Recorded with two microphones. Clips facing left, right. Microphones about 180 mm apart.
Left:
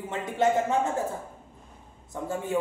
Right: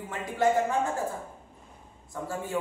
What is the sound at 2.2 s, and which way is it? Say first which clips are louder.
Speech: left 2 dB; 20° left (ahead or behind).